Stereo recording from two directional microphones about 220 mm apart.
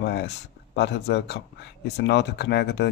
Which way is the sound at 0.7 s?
50° left (ahead or behind).